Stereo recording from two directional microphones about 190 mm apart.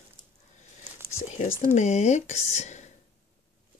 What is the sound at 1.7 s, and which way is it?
Speech, 40° left (ahead or behind).